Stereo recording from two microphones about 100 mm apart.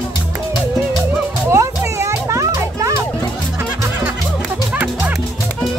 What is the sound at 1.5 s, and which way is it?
Music, 30° right (ahead or behind).